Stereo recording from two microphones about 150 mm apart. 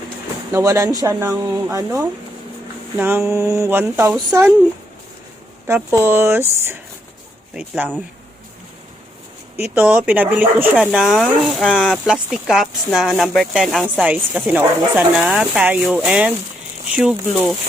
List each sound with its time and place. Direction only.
0.5 s a woman's voice: 20° right (ahead or behind)
3.3 s a woman's voice: 20° right (ahead or behind)
5.6 s a woman's voice: 15° right (ahead or behind)
9.9 s a woman's voice: 10° right (ahead or behind)